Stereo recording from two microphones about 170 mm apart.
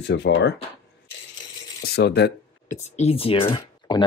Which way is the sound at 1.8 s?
70° left (ahead or behind).